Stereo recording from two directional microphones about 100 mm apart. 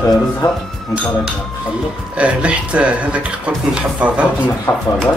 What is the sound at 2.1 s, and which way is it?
Speech, 10° right (ahead or behind).